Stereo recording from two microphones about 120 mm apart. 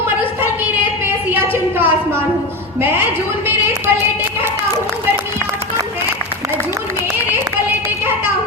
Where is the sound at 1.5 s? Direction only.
20° right (ahead or behind).